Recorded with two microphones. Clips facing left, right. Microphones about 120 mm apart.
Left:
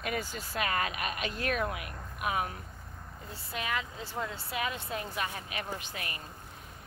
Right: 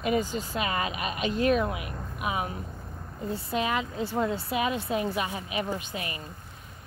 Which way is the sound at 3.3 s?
20° right (ahead or behind).